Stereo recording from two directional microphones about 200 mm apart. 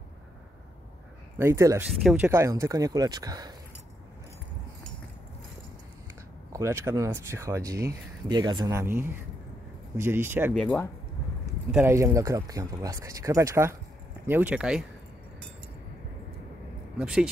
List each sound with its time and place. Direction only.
1.4 s speech: 15° right (ahead or behind)
6.5 s speech: 15° right (ahead or behind)
10.5 s speech: 5° left (ahead or behind)
11.7 s speech: 15° right (ahead or behind)
17.0 s speech: 5° right (ahead or behind)